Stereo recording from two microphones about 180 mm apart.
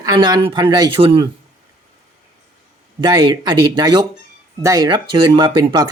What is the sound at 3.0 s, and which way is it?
Speech, 25° right (ahead or behind).